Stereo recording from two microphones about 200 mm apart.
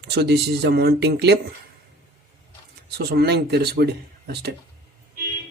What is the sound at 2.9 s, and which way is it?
Speech, 55° right (ahead or behind).